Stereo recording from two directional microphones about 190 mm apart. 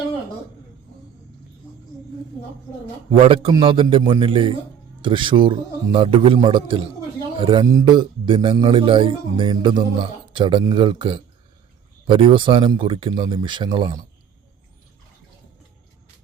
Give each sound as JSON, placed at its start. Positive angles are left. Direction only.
{"t": 3.1, "sound": "speech", "side_deg": -30}